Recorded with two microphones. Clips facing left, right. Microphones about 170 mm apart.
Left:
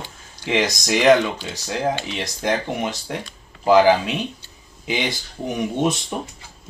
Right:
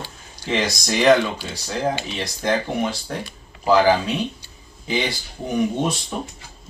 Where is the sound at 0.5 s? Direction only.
15° left (ahead or behind).